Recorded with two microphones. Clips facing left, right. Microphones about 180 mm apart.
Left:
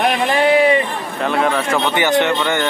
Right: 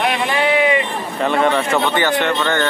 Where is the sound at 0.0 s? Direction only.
45° left (ahead or behind).